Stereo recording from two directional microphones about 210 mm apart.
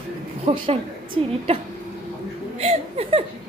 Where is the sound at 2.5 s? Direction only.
30° right (ahead or behind).